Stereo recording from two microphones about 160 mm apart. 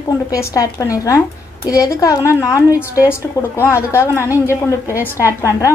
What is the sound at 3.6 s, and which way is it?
Speech, 10° right (ahead or behind).